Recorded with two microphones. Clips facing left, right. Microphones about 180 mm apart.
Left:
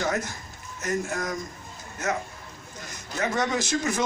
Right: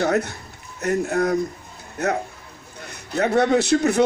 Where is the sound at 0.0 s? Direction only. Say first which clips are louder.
Right 7 dB; 65° right (ahead or behind).